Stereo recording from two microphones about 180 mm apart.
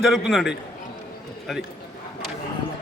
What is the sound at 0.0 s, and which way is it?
Speech, centre (ahead or behind).